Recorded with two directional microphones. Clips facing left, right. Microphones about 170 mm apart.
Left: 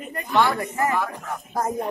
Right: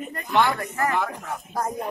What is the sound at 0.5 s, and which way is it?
Speech, 15° left (ahead or behind).